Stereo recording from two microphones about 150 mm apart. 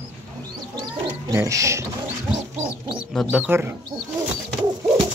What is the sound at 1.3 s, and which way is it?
Speech, 20° right (ahead or behind).